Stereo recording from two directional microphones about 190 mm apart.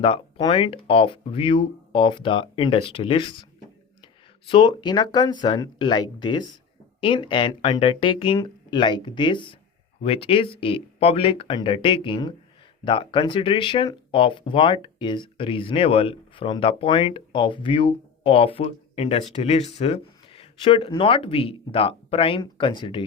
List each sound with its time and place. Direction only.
0.0 s speech: 25° left (ahead or behind)
4.4 s speech: 25° left (ahead or behind)